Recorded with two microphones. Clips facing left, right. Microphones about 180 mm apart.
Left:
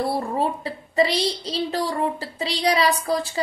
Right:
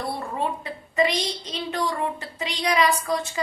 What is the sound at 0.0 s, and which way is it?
A woman's voice, 30° left (ahead or behind).